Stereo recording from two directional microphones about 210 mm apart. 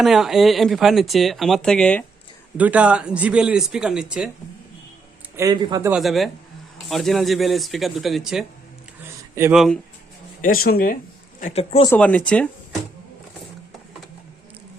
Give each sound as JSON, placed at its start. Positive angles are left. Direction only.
{"t": 0.0, "sound": "speech", "side_deg": 0}
{"t": 2.6, "sound": "speech", "side_deg": -5}
{"t": 5.4, "sound": "a man's voice", "side_deg": -20}
{"t": 5.9, "sound": "speech", "side_deg": 0}
{"t": 10.4, "sound": "speech", "side_deg": 45}
{"t": 11.3, "sound": "speech", "side_deg": 35}
{"t": 11.9, "sound": "speech", "side_deg": 5}